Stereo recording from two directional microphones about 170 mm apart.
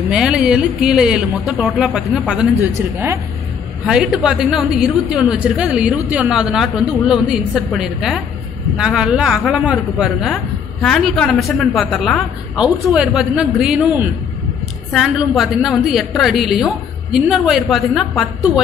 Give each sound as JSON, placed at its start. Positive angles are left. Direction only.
{"t": 0.1, "sound": "a man's voice", "side_deg": -5}